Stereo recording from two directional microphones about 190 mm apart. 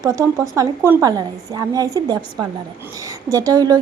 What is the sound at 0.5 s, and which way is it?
A woman's voice, 15° right (ahead or behind).